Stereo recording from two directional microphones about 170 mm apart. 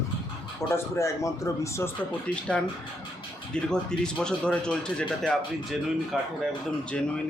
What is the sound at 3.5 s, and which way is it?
Speech, 5° left (ahead or behind).